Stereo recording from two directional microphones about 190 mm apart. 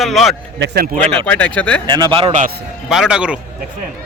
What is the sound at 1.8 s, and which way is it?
Speech, 25° right (ahead or behind).